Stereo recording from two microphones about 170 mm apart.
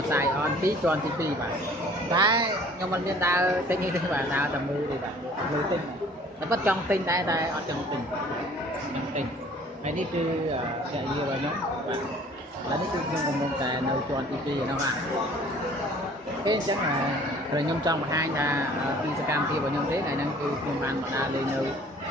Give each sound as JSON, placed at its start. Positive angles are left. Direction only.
{"t": 0.1, "sound": "speech", "side_deg": -15}
{"t": 2.1, "sound": "speech", "side_deg": -25}
{"t": 2.9, "sound": "speech", "side_deg": -15}
{"t": 6.5, "sound": "speech", "side_deg": -10}
{"t": 17.6, "sound": "speech", "side_deg": -25}